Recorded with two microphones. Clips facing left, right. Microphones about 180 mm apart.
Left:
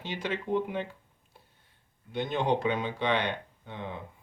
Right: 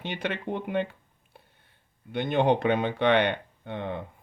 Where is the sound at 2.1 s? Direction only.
60° right (ahead or behind).